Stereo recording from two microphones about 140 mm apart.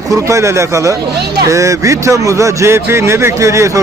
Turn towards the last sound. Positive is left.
turn(degrees=-20)  # may be behind; listen again after turning